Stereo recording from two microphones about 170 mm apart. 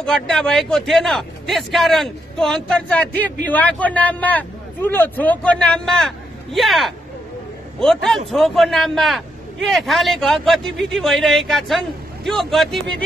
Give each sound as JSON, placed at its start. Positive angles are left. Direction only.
{"t": 0.0, "sound": "a man's voice", "side_deg": 5}